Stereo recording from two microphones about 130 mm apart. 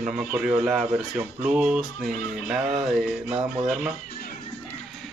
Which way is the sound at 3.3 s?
45° right (ahead or behind).